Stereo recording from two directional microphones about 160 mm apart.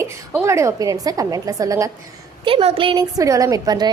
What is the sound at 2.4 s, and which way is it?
A woman's voice, 35° right (ahead or behind).